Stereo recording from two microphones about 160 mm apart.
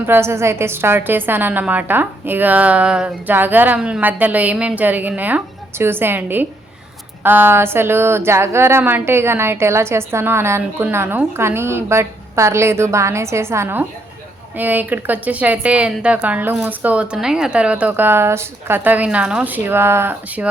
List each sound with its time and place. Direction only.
0.0 s speech: 15° right (ahead or behind)